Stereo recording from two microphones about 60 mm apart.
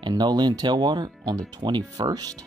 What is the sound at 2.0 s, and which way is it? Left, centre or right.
Speech, right.